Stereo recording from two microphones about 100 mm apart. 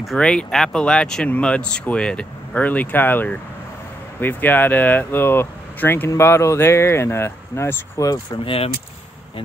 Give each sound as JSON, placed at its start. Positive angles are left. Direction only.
{"t": 0.0, "sound": "speech", "side_deg": 5}